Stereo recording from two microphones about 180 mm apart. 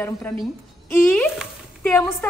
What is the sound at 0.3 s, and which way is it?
A woman's voice, 10° left (ahead or behind).